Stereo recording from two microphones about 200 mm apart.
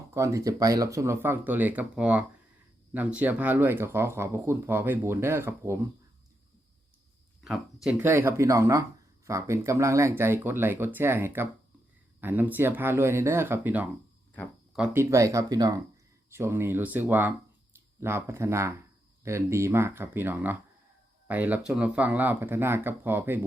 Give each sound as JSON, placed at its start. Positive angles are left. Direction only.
{"t": 0.1, "sound": "speech", "side_deg": -15}
{"t": 7.4, "sound": "speech", "side_deg": 0}